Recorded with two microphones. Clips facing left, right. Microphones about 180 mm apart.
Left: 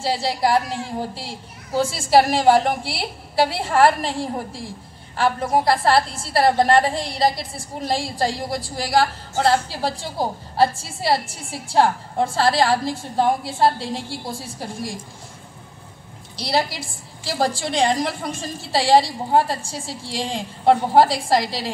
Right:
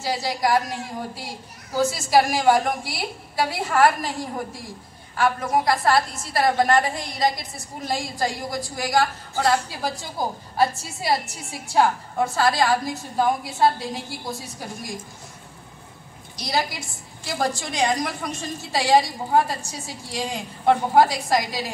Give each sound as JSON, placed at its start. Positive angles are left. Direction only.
{"t": 0.0, "sound": "a woman's voice", "side_deg": 30}
{"t": 16.3, "sound": "a woman's voice", "side_deg": 30}